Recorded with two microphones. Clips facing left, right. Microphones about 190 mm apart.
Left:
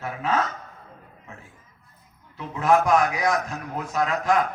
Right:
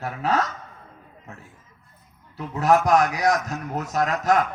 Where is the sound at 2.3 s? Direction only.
40° right (ahead or behind).